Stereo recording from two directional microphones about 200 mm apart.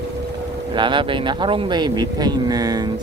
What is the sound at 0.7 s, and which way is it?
Speech, 25° right (ahead or behind).